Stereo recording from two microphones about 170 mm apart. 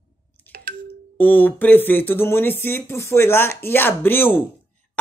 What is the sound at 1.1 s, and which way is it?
Speech, 10° left (ahead or behind).